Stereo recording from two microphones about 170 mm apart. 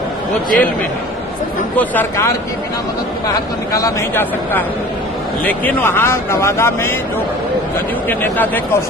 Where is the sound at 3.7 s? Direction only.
20° left (ahead or behind).